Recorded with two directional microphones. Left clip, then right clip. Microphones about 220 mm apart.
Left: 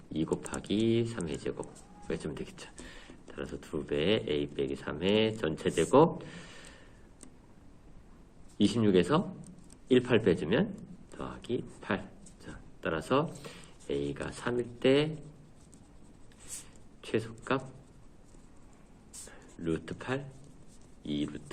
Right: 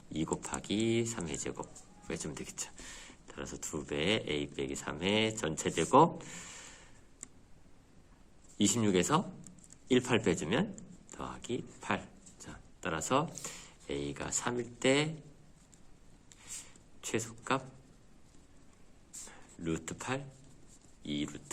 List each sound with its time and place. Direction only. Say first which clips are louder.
0.1 s speech: left 3 dB; 35° right (ahead or behind)
8.5 s speech: left 4 dB; 35° right (ahead or behind)
17.0 s speech: left 3 dB; 35° right (ahead or behind)
19.3 s speech: left 4 dB; 35° right (ahead or behind)